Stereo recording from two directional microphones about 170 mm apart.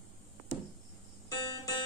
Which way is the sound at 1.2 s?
20° left (ahead or behind).